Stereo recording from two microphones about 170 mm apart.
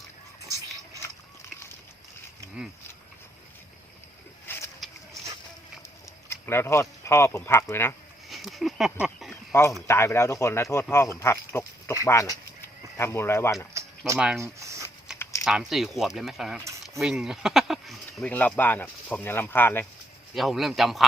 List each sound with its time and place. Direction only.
4.4 s pigeon: 10° left (ahead or behind)
6.2 s speech: 15° left (ahead or behind)
8.3 s speech: centre (ahead or behind)
9.3 s a sound: 15° left (ahead or behind)
9.8 s speech: 15° left (ahead or behind)
11.2 s pig: 15° left (ahead or behind)
12.0 s speech: 15° left (ahead or behind)
14.2 s speech: 5° right (ahead or behind)
14.4 s a sound: 15° right (ahead or behind)
15.2 s a sound: 15° left (ahead or behind)
15.4 s speech: centre (ahead or behind)
20.3 s speech: centre (ahead or behind)